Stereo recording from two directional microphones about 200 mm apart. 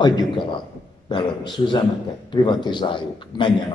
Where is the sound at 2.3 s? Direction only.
20° left (ahead or behind).